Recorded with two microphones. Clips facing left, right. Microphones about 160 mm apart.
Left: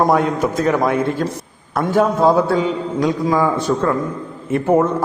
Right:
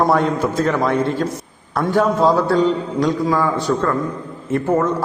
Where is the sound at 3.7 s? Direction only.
15° left (ahead or behind).